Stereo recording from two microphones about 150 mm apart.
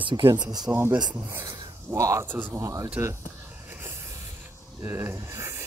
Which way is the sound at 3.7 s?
15° right (ahead or behind).